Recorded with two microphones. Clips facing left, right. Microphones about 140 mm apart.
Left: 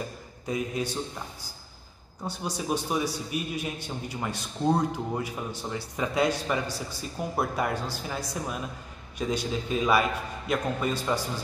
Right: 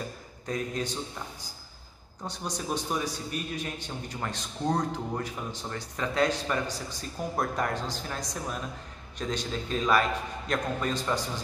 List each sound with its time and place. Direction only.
0.5 s a man's voice: 10° left (ahead or behind)
2.2 s a man's voice: 10° left (ahead or behind)